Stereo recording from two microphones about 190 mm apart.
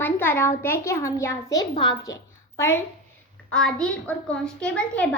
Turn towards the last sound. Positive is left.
turn(degrees=5)  # may be behind; listen again after turning